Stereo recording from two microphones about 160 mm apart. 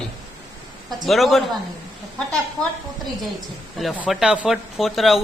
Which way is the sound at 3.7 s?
Centre (ahead or behind).